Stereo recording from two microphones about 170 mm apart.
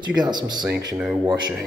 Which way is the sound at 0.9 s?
5° right (ahead or behind).